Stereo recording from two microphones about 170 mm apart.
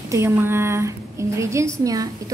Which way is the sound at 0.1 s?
15° right (ahead or behind).